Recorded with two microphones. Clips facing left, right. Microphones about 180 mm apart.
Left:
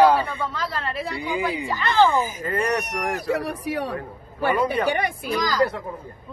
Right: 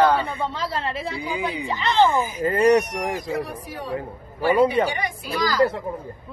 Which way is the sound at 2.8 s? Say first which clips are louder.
Even; 75° left (ahead or behind).